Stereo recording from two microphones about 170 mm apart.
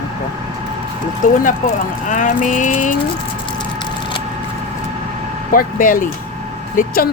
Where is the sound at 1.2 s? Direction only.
55° left (ahead or behind).